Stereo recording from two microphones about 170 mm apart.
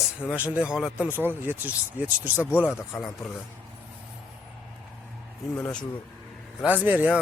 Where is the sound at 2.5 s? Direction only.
15° left (ahead or behind).